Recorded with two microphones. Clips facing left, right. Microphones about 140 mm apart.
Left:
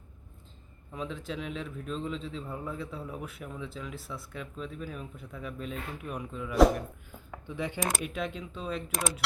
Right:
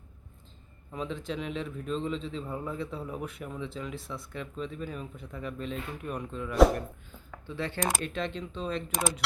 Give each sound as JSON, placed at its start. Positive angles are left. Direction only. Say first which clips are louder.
{"t": 0.9, "sound": "a man's voice", "louder": "right 2 dB", "side_deg": 0}
{"t": 7.3, "sound": "speech", "louder": "even", "side_deg": 15}
{"t": 7.8, "sound": "a man's voice", "louder": "right 3 dB", "side_deg": 0}